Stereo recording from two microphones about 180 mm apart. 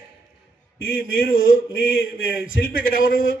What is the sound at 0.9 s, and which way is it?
Speech, 55° left (ahead or behind).